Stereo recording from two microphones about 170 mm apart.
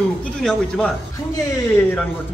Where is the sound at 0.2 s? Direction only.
5° left (ahead or behind).